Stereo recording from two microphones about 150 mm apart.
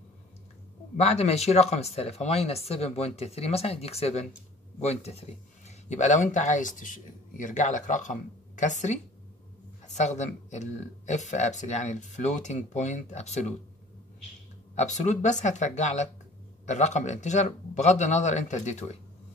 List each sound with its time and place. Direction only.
0.9 s speech: 45° left (ahead or behind)
14.8 s speech: 55° left (ahead or behind)